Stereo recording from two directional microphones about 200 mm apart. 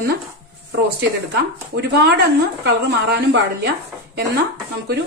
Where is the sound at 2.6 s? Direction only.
60° right (ahead or behind).